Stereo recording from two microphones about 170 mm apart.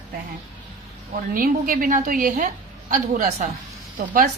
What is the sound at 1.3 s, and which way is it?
A woman's voice, 55° right (ahead or behind).